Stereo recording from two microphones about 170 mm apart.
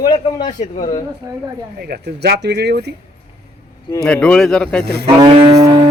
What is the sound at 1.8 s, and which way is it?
Speech, 70° right (ahead or behind).